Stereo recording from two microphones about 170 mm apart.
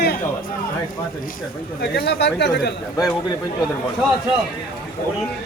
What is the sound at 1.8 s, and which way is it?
Speech, 75° left (ahead or behind).